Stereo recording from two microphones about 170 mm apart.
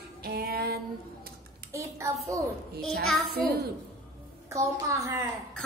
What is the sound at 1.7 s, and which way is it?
Speech, 15° right (ahead or behind).